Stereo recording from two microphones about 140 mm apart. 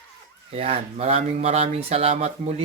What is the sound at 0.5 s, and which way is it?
Speech, 45° right (ahead or behind).